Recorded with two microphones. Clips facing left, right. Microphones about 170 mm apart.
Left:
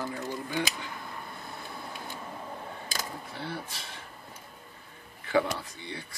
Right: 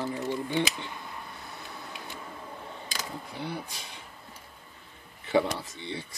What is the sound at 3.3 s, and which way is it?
Speech, 15° right (ahead or behind).